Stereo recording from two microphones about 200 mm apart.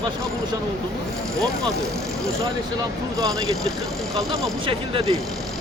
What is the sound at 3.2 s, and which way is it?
Speech, 15° right (ahead or behind).